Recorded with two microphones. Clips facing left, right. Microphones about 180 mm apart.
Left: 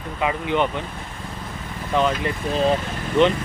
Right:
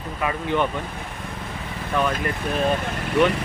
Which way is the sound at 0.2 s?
20° left (ahead or behind).